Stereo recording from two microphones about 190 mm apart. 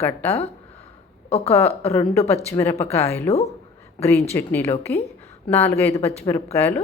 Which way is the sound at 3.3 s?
35° left (ahead or behind).